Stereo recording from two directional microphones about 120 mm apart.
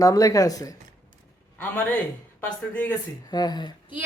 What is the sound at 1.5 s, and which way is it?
A man's voice, 10° left (ahead or behind).